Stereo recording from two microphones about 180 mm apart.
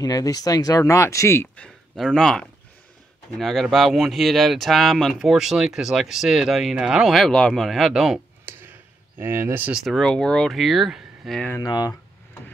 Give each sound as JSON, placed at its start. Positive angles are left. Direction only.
{"t": 0.0, "sound": "speech", "side_deg": 20}
{"t": 8.5, "sound": "a sound", "side_deg": -10}
{"t": 9.2, "sound": "speech", "side_deg": -15}
{"t": 9.8, "sound": "speech", "side_deg": 5}
{"t": 11.5, "sound": "speech", "side_deg": 20}